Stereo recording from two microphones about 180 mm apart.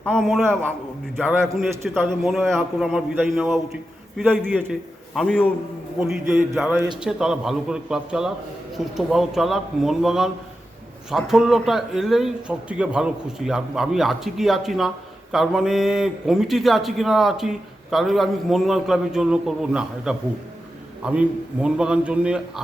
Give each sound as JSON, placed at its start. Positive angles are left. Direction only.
{"t": 0.0, "sound": "a man's voice", "side_deg": 5}